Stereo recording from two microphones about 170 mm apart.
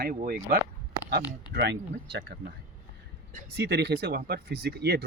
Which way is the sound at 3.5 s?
75° right (ahead or behind).